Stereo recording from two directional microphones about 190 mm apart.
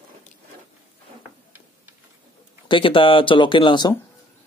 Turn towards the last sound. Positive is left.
turn(degrees=25)  # may be behind; listen again after turning